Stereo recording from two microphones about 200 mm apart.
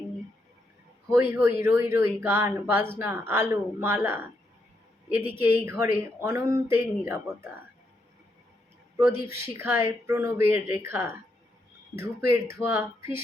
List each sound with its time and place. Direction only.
1.1 s speech: 15° right (ahead or behind)
9.0 s speech: 50° left (ahead or behind)
9.3 s speech: 10° right (ahead or behind)